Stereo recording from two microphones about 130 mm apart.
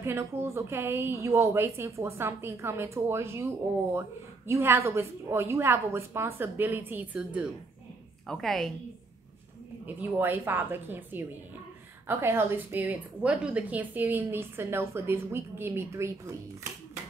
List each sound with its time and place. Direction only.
0.0 s a woman's voice: 20° right (ahead or behind)
8.3 s a woman's voice: centre (ahead or behind)
10.1 s a woman's voice: 15° right (ahead or behind)